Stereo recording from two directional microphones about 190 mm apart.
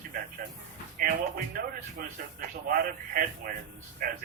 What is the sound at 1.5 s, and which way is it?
Speech, 50° right (ahead or behind).